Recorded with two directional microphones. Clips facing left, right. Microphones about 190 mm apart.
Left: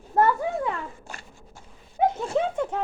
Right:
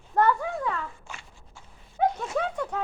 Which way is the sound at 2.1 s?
25° left (ahead or behind).